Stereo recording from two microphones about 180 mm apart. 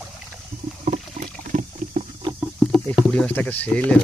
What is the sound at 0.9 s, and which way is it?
Rowboat, 40° right (ahead or behind).